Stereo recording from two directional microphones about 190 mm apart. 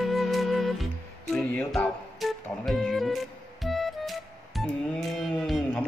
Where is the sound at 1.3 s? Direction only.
5° left (ahead or behind).